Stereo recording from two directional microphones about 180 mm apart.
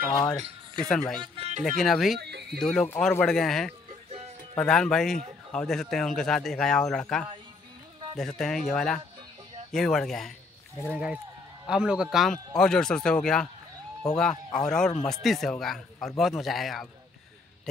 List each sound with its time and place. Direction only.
0.7 s a man's voice: 5° left (ahead or behind)
1.2 s a sound: 30° right (ahead or behind)
1.6 s a man's voice: centre (ahead or behind)
2.1 s a sound: 65° right (ahead or behind)
2.6 s a man's voice: 5° left (ahead or behind)
14.5 s a man's voice: 5° left (ahead or behind)